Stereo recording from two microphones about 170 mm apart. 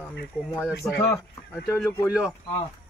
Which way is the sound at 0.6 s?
Centre (ahead or behind).